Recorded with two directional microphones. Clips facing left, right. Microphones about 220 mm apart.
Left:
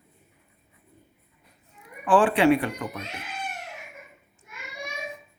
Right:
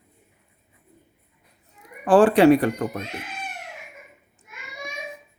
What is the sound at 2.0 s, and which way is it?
Speech, 40° right (ahead or behind).